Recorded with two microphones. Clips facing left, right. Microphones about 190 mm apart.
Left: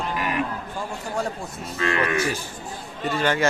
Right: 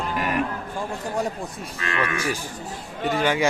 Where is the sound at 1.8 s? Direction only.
35° left (ahead or behind).